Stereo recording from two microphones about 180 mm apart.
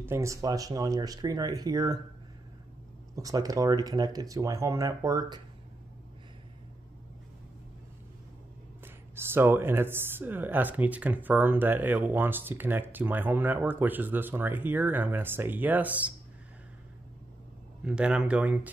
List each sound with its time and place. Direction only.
0.0 s speech: 15° right (ahead or behind)
3.2 s speech: 20° right (ahead or behind)
8.8 s speech: 10° right (ahead or behind)
17.8 s speech: 5° right (ahead or behind)